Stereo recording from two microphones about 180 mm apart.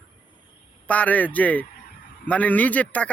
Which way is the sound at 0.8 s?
10° left (ahead or behind).